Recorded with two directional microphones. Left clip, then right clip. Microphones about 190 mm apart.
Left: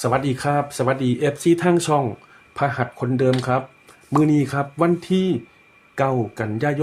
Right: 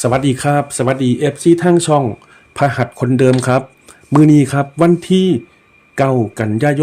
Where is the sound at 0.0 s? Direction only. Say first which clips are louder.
Right 6 dB; 40° right (ahead or behind).